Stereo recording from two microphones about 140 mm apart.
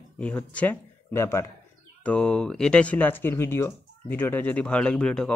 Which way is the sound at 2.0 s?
5° left (ahead or behind).